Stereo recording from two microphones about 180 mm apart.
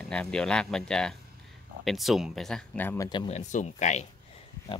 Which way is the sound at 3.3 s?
40° left (ahead or behind).